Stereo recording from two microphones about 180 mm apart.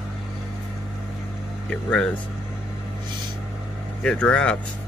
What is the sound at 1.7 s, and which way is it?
Speech, 5° left (ahead or behind).